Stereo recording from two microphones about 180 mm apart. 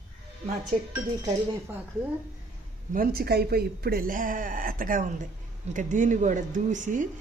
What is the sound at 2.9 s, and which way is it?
A woman's voice, 50° right (ahead or behind).